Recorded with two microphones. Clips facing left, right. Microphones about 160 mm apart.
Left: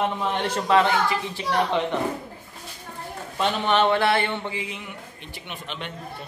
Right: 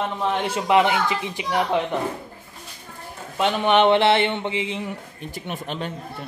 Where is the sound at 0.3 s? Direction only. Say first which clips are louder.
Right 3 dB; 5° right (ahead or behind).